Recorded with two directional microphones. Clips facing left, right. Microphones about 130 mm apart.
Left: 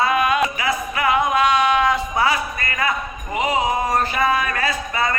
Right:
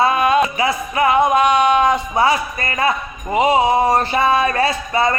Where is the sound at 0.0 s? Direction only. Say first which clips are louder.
Right 4 dB; 30° right (ahead or behind).